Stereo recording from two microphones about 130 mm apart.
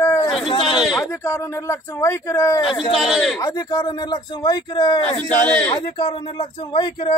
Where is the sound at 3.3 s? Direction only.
25° left (ahead or behind).